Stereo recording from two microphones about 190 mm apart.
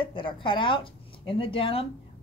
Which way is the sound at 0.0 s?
25° left (ahead or behind).